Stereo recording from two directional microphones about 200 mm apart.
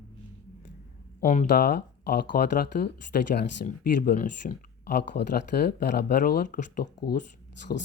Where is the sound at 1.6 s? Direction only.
50° left (ahead or behind).